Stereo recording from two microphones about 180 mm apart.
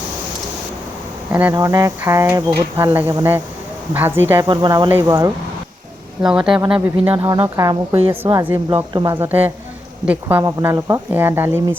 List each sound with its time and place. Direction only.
1.3 s insect: 10° right (ahead or behind)
4.4 s speech: 25° right (ahead or behind)
4.9 s insect: 15° right (ahead or behind)
6.2 s speech: 5° right (ahead or behind)
6.7 s insect: 5° right (ahead or behind)
7.9 s a woman's voice: 30° right (ahead or behind)
8.2 s insect: 15° right (ahead or behind)